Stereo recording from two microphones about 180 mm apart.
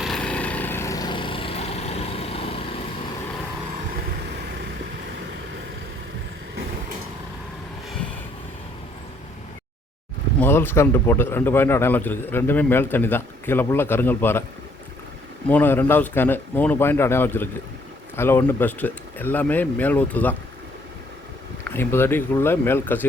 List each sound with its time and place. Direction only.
0.0 s vehicle: 5° left (ahead or behind); by 2.6 s 35° left (ahead or behind)
10.4 s a man's voice: 10° left (ahead or behind)
15.4 s a man's voice: 10° left (ahead or behind)
21.7 s a man's voice: 10° left (ahead or behind)